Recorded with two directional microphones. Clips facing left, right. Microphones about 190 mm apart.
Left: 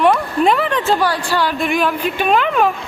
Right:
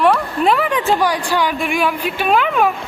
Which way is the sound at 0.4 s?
5° right (ahead or behind).